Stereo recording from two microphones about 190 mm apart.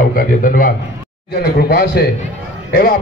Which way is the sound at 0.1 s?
45° left (ahead or behind).